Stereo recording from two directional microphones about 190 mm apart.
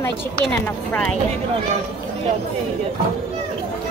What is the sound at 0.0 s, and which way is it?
Speech, 5° left (ahead or behind).